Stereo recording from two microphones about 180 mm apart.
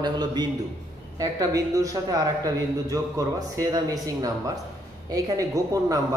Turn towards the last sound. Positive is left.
turn(degrees=-20)  # may be behind; listen again after turning